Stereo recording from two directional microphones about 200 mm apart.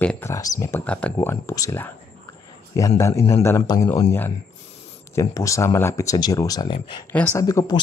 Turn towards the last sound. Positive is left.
turn(degrees=20)  # may be behind; listen again after turning